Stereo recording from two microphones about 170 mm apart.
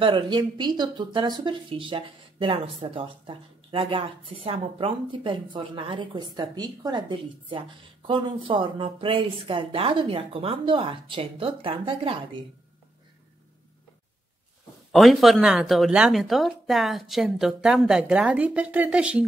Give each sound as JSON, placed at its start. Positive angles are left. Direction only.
{"t": 0.0, "sound": "speech", "side_deg": -30}
{"t": 14.9, "sound": "a woman's voice", "side_deg": 0}